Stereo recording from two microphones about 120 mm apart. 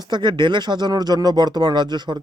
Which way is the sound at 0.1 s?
40° right (ahead or behind).